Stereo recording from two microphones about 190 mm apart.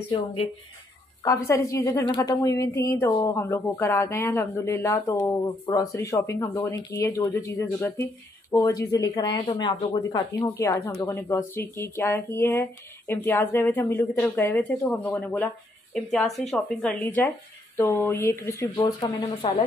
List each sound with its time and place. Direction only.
0.1 s speech: 30° left (ahead or behind)
1.2 s speech: 15° left (ahead or behind)
18.8 s speech: 25° left (ahead or behind)